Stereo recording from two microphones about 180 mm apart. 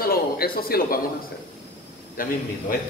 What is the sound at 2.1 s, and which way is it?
Speech, 50° left (ahead or behind).